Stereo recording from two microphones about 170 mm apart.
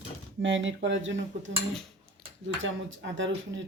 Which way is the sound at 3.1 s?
90° right.